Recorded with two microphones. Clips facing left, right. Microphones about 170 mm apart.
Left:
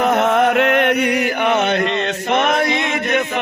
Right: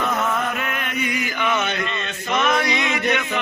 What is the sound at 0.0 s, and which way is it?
Chant, 70° left (ahead or behind).